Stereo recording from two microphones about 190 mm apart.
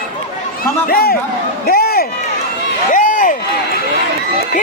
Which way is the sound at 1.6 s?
55° left (ahead or behind).